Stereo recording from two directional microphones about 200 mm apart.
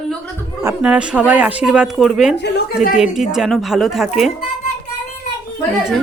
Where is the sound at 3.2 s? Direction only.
Centre (ahead or behind).